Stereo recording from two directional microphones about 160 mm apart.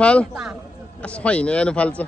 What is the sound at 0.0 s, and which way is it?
Speech, 5° left (ahead or behind).